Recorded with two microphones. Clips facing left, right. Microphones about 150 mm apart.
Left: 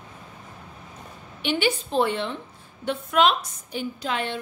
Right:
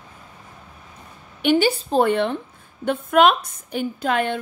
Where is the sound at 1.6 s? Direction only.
35° right (ahead or behind).